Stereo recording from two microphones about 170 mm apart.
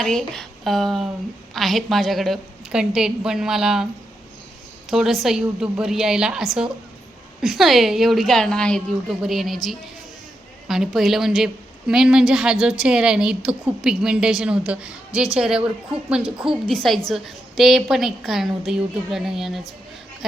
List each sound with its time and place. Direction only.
0.0 s a woman's voice: centre (ahead or behind)
4.9 s a woman's voice: centre (ahead or behind)